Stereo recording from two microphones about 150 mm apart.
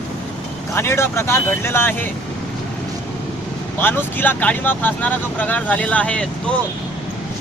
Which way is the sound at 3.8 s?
15° left (ahead or behind).